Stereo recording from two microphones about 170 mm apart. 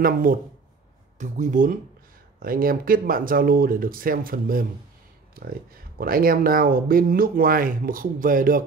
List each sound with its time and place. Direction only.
0.0 s speech: 55° right (ahead or behind)
5.9 s speech: 60° right (ahead or behind)